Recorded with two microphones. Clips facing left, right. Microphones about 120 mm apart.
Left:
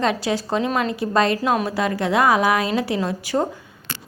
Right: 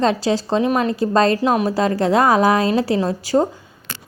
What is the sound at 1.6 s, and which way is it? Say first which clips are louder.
A woman's voice: right 4 dB; 35° right (ahead or behind).